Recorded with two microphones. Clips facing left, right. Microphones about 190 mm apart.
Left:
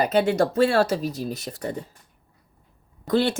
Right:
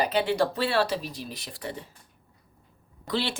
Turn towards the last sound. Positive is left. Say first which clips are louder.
# left 8 dB
turn(degrees=50)  # may be behind; listen again after turning